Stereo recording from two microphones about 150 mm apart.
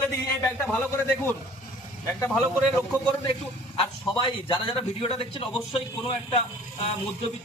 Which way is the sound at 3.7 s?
40° left (ahead or behind).